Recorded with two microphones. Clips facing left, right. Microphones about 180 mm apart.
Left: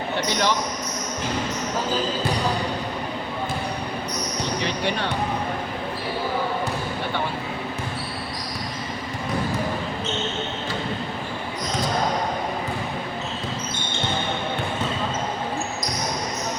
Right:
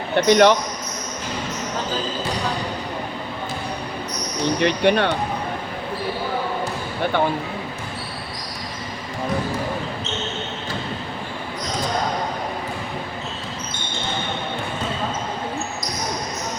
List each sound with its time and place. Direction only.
0.3 s speech: 60° right (ahead or behind)
4.6 s speech: 65° right (ahead or behind)